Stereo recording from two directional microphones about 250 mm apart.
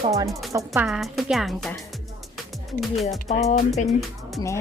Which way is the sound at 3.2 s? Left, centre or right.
Left.